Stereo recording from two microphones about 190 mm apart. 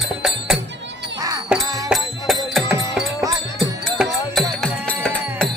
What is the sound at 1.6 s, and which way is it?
Music, 20° right (ahead or behind).